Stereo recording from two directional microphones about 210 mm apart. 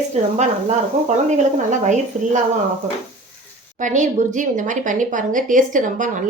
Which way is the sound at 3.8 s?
35° right (ahead or behind).